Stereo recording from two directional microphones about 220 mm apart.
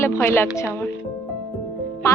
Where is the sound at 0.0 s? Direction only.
10° left (ahead or behind).